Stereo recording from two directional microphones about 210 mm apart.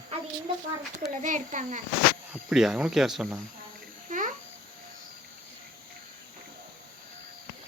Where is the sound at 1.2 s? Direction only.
35° right (ahead or behind).